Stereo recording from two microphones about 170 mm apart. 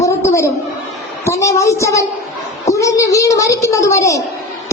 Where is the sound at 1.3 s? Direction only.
20° left (ahead or behind).